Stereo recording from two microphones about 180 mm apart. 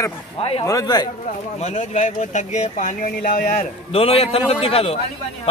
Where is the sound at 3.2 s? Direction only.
50° left (ahead or behind).